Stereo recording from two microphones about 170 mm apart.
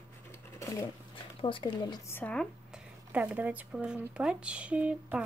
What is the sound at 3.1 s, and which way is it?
Speech, 10° right (ahead or behind).